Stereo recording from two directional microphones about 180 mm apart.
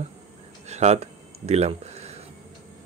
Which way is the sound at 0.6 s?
40° right (ahead or behind).